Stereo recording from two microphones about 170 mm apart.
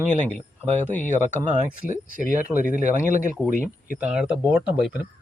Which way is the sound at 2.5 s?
Centre (ahead or behind).